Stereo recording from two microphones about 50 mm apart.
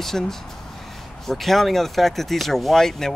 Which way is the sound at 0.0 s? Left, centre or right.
Centre.